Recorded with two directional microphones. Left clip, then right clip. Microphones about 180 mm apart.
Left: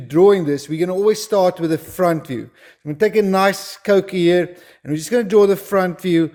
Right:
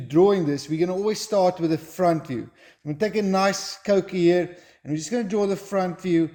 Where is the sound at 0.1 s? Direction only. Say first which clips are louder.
Left 6 dB; 30° left (ahead or behind).